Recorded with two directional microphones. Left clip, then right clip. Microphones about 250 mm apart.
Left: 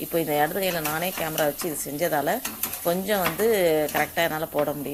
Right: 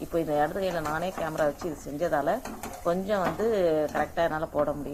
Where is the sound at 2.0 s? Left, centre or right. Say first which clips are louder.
Left 2 dB; left.